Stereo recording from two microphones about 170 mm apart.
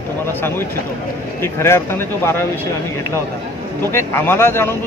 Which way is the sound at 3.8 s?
15° left (ahead or behind).